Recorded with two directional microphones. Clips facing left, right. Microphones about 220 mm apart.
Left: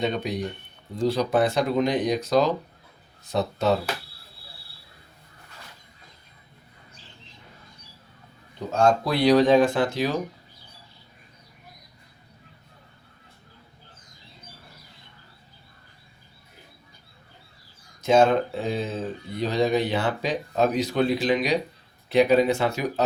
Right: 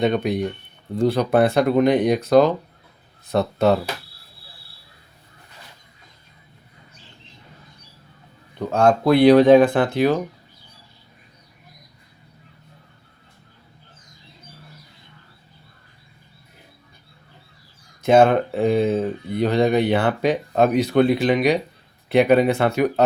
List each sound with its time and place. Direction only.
0.0 s speech: 60° right (ahead or behind)
8.5 s speech: 60° right (ahead or behind)
18.0 s speech: 60° right (ahead or behind)